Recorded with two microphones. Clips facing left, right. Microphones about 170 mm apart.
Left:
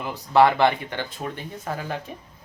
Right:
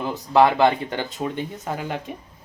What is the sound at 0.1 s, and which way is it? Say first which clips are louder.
Speech: even; 20° right (ahead or behind).